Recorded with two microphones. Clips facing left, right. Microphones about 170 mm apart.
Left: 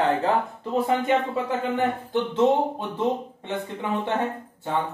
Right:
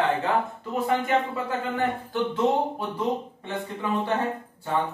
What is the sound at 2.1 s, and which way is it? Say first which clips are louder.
Speech: left 4 dB; 20° left (ahead or behind).